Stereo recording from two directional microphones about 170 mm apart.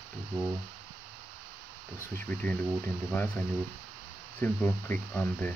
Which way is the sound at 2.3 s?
10° left (ahead or behind).